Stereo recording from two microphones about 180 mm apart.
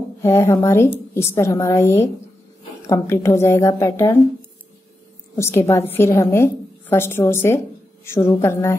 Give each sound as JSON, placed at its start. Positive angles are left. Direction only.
{"t": 0.2, "sound": "a woman's voice", "side_deg": 15}
{"t": 5.3, "sound": "a woman's voice", "side_deg": 15}